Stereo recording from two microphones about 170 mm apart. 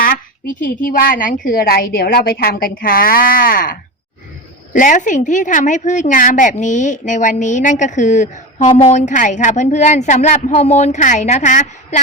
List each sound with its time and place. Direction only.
0.0 s a woman's voice: 55° left (ahead or behind)